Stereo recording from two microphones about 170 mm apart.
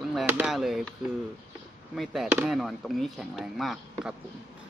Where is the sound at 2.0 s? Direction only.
Centre (ahead or behind).